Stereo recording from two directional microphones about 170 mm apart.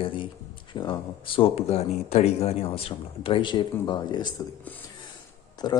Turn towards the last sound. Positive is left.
turn(degrees=25)  # may be behind; listen again after turning